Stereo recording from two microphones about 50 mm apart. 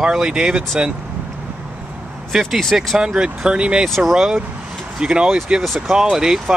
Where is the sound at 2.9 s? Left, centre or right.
Centre.